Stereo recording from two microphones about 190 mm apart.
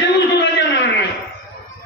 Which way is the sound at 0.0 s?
65° left (ahead or behind).